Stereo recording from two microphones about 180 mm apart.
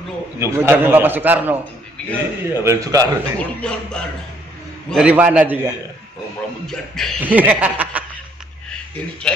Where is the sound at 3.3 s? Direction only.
5° left (ahead or behind).